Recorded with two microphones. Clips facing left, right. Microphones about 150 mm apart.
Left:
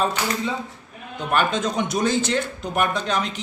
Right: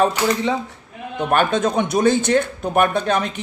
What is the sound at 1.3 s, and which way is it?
A man's voice, 55° right (ahead or behind).